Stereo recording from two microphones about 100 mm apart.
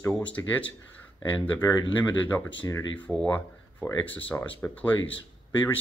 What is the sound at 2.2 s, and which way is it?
Speech, 15° left (ahead or behind).